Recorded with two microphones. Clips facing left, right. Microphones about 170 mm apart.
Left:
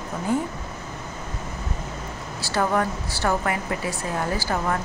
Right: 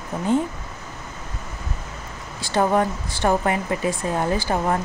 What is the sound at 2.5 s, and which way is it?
A woman's voice, 25° right (ahead or behind).